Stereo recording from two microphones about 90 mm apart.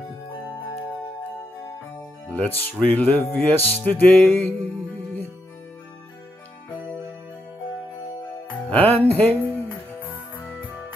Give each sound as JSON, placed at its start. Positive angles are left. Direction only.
{"t": 2.2, "sound": "music", "side_deg": 15}
{"t": 8.6, "sound": "music", "side_deg": 15}